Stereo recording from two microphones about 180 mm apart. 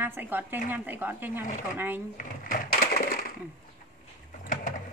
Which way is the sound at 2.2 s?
45° left (ahead or behind).